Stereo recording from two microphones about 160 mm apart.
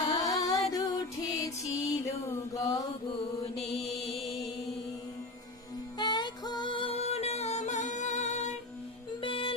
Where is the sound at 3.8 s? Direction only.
Centre (ahead or behind).